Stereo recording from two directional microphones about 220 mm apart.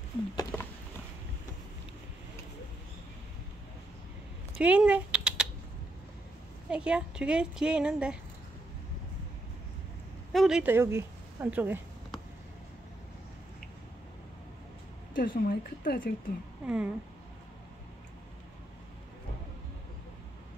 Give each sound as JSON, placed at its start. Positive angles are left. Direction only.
{"t": 0.4, "sound": "a sound", "side_deg": 15}
{"t": 4.6, "sound": "a sound", "side_deg": -5}
{"t": 6.7, "sound": "a woman's voice", "side_deg": -5}
{"t": 10.3, "sound": "a woman's voice", "side_deg": 0}
{"t": 15.1, "sound": "a woman's voice", "side_deg": 40}
{"t": 16.6, "sound": "a woman's voice", "side_deg": -5}